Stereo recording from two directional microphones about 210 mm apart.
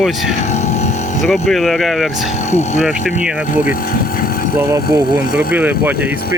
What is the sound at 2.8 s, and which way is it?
Speech, centre (ahead or behind).